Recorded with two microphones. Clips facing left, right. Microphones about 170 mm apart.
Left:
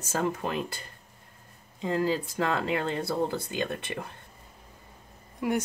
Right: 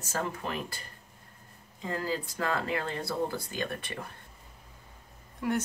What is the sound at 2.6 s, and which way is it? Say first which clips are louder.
Speech: left 4 dB; 20° left (ahead or behind).